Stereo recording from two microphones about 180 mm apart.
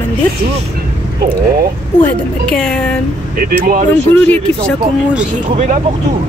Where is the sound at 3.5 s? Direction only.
50° right (ahead or behind).